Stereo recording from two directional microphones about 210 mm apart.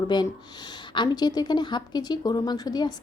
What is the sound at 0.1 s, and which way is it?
Speech, 20° left (ahead or behind).